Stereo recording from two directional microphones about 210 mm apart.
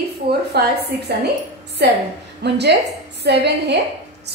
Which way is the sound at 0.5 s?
50° right (ahead or behind).